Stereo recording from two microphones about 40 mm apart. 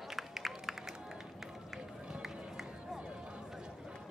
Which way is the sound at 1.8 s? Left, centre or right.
Right.